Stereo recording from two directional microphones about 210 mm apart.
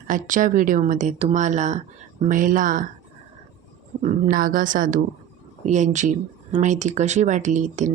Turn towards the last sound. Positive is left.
turn(degrees=-35)  # may be behind; listen again after turning